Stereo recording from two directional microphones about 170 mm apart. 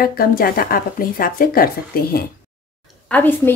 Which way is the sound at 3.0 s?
10° left (ahead or behind).